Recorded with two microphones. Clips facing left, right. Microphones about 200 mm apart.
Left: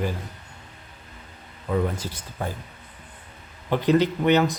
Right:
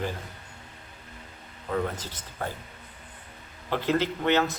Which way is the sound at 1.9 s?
10° left (ahead or behind).